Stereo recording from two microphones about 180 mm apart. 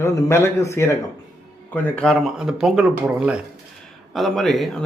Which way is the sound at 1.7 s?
5° left (ahead or behind).